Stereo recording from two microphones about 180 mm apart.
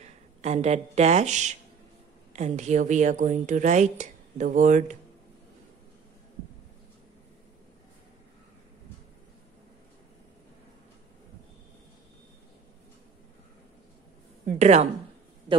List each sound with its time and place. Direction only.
0.0 s a woman's voice: 40° right (ahead or behind)
14.6 s a woman's voice: 40° right (ahead or behind)